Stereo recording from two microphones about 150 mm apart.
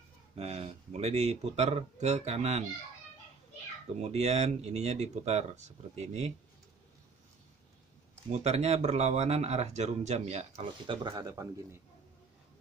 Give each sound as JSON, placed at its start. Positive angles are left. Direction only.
{"t": 0.4, "sound": "speech", "side_deg": -45}
{"t": 4.0, "sound": "speech", "side_deg": -45}
{"t": 8.3, "sound": "speech", "side_deg": -45}